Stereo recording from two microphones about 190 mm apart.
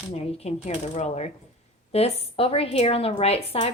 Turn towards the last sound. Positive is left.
turn(degrees=30)  # may be behind; listen again after turning